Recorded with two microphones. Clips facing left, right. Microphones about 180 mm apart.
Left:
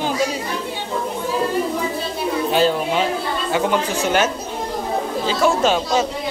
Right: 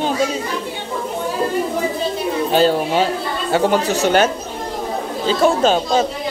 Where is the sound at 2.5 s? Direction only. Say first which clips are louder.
Right 3 dB; 35° right (ahead or behind).